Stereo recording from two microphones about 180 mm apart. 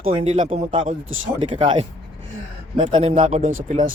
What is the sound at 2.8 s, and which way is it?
Speech, 45° right (ahead or behind).